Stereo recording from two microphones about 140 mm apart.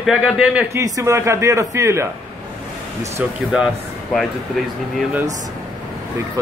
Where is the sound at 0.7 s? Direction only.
20° right (ahead or behind).